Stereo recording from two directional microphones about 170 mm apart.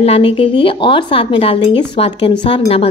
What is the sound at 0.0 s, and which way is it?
A woman's voice, 35° left (ahead or behind).